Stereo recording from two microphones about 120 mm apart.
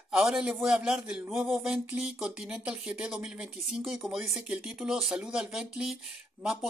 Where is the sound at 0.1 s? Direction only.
5° right (ahead or behind).